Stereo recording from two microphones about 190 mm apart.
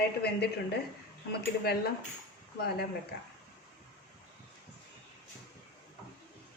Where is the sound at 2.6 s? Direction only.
55° left (ahead or behind).